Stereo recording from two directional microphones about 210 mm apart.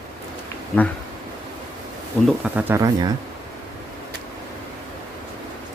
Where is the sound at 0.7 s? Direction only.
5° left (ahead or behind).